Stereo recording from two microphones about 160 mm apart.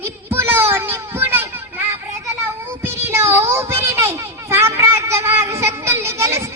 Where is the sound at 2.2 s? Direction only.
15° right (ahead or behind).